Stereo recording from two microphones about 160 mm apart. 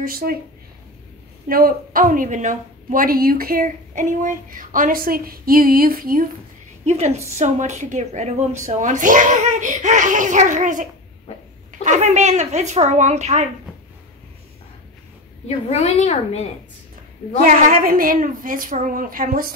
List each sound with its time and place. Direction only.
0.0 s speech: 65° right (ahead or behind)
1.5 s a woman's voice: 65° right (ahead or behind)
6.9 s a woman's voice: 40° right (ahead or behind)
15.4 s a child's voice: 40° left (ahead or behind)
17.4 s a woman's voice: 60° right (ahead or behind)